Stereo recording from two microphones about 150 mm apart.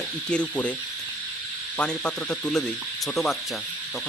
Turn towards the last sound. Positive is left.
turn(degrees=0)  # may be behind; listen again after turning